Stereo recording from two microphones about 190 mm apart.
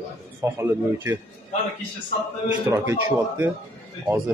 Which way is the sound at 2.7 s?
15° right (ahead or behind).